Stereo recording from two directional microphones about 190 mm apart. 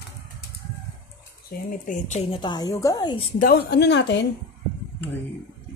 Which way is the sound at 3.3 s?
50° left (ahead or behind).